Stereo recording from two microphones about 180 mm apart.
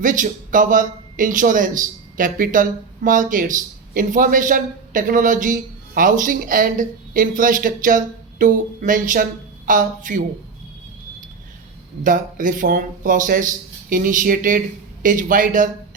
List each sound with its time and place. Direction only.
0.0 s speech: 45° right (ahead or behind)
12.0 s speech: 45° right (ahead or behind)